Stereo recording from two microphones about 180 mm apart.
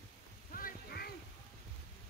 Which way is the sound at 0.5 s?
55° left (ahead or behind).